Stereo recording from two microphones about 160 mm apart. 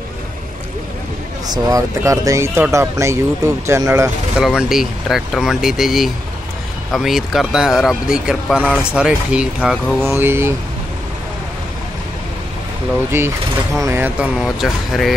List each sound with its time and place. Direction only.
1.5 s speech: 20° right (ahead or behind)
4.4 s speech: 5° right (ahead or behind)
13.1 s speech: 15° right (ahead or behind)